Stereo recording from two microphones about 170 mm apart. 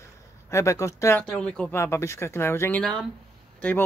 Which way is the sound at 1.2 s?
5° left (ahead or behind).